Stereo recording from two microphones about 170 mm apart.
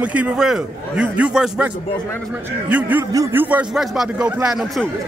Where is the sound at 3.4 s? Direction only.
5° right (ahead or behind).